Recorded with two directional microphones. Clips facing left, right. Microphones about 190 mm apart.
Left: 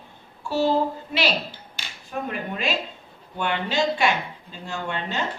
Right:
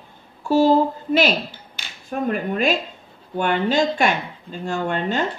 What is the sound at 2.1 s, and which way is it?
Female singing, 50° right (ahead or behind).